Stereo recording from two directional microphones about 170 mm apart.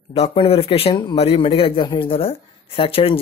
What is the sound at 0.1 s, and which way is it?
Speech, 35° left (ahead or behind).